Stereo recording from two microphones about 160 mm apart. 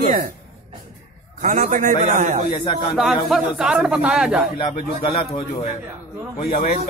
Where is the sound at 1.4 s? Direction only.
55° right (ahead or behind).